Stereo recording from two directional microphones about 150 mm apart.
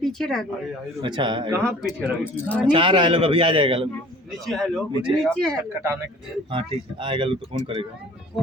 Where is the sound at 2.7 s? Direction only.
35° right (ahead or behind).